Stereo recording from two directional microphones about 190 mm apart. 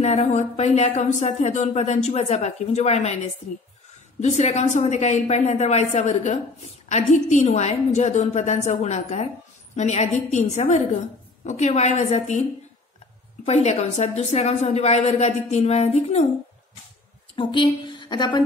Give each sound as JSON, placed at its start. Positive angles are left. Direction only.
{"t": 0.0, "sound": "speech", "side_deg": 35}
{"t": 13.5, "sound": "speech", "side_deg": 35}
{"t": 17.4, "sound": "a woman's voice", "side_deg": 25}